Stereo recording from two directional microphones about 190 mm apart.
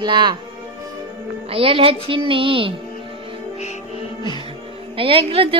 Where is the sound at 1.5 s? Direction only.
30° right (ahead or behind).